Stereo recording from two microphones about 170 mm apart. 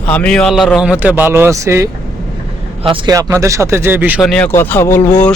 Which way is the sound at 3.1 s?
20° right (ahead or behind).